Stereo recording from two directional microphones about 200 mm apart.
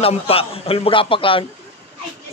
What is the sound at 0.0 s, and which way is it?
A man's voice, 30° left (ahead or behind).